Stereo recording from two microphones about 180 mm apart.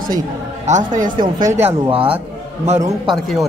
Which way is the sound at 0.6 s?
40° right (ahead or behind).